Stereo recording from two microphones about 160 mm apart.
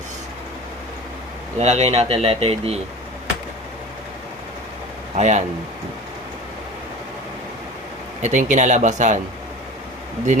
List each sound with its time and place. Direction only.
1.5 s speech: 45° right (ahead or behind)
5.1 s speech: 45° right (ahead or behind)
8.2 s speech: 50° right (ahead or behind)